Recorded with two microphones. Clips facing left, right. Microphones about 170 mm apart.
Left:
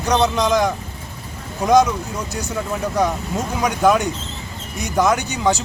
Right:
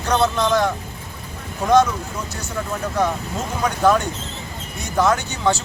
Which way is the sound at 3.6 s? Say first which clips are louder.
Left 1 dB; 15° left (ahead or behind).